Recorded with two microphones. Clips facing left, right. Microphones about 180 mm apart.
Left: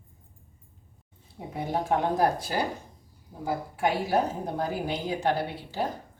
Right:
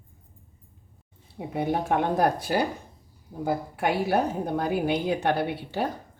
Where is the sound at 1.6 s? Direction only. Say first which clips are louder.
Right 2 dB; 60° right (ahead or behind).